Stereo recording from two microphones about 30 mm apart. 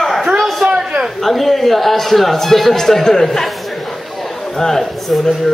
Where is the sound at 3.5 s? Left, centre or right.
Centre.